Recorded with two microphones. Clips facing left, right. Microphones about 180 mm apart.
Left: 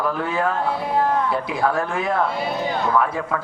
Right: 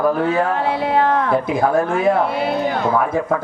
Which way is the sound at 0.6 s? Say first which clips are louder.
Right 4 dB; 70° right (ahead or behind).